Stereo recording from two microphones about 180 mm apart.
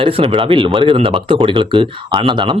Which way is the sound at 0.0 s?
30° right (ahead or behind).